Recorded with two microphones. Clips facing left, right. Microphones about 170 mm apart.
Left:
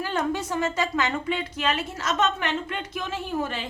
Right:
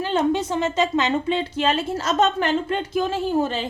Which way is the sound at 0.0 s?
20° right (ahead or behind).